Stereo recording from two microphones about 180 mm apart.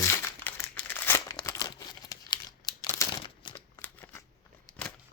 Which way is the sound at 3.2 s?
30° left (ahead or behind).